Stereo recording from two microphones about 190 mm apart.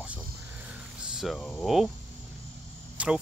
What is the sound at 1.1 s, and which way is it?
Speech, centre (ahead or behind).